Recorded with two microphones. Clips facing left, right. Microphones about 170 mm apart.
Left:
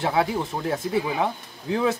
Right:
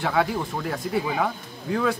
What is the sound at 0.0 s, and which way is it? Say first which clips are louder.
A man's voice: left 1 dB; 25° left (ahead or behind).